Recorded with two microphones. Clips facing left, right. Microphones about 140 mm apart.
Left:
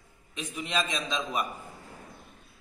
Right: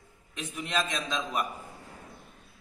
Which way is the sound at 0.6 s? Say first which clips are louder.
Even; 15° left (ahead or behind).